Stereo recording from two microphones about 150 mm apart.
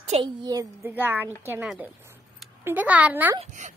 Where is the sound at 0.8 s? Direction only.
10° right (ahead or behind).